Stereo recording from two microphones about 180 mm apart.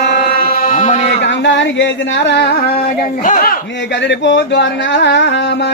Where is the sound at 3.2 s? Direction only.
50° left (ahead or behind).